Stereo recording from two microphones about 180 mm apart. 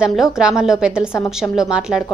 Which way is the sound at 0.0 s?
5° right (ahead or behind).